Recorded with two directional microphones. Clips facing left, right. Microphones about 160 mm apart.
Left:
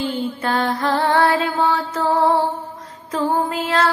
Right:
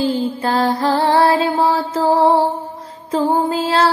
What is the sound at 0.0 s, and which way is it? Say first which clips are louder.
Music: right 4 dB; 35° right (ahead or behind).